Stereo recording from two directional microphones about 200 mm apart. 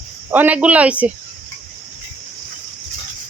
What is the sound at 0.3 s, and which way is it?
Speech, 10° right (ahead or behind).